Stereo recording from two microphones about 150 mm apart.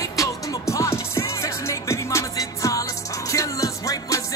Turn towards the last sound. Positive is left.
turn(degrees=20)  # may be behind; listen again after turning